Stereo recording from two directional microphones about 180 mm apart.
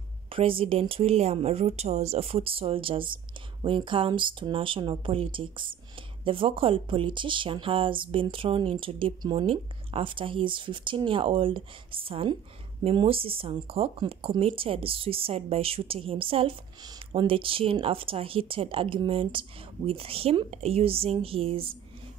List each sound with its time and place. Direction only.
0.3 s a woman's voice: 30° right (ahead or behind)